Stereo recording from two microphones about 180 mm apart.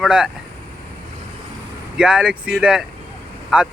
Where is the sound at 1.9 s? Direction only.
5° right (ahead or behind).